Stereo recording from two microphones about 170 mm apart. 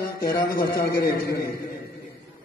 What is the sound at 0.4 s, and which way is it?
Speech, 60° left (ahead or behind).